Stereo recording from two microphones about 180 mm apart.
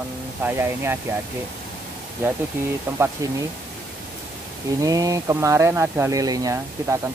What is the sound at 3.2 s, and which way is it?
Speech, 20° right (ahead or behind).